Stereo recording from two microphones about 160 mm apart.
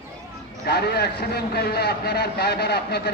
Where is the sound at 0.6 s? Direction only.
90° left.